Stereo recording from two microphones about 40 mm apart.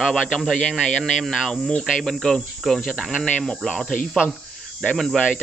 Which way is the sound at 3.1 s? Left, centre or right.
Left.